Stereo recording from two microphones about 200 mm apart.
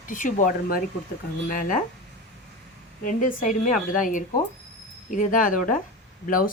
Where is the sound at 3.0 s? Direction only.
40° left (ahead or behind).